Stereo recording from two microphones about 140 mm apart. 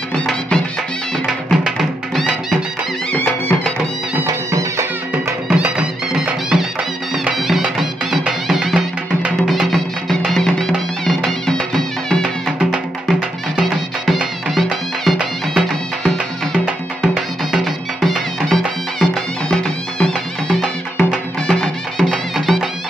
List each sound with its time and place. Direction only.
0.1 s music: 5° left (ahead or behind)
3.1 s music: 10° left (ahead or behind)
4.5 s music: 20° right (ahead or behind)
5.1 s music: 10° right (ahead or behind)